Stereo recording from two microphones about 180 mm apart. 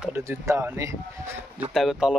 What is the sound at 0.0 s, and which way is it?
Speech, 10° right (ahead or behind).